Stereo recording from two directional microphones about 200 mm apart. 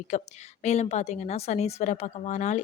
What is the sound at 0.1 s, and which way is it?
Speech, 35° left (ahead or behind).